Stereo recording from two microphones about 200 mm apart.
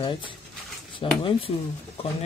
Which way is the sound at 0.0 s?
25° left (ahead or behind).